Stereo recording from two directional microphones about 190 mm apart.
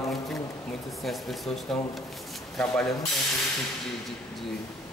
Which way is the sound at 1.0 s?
Centre (ahead or behind).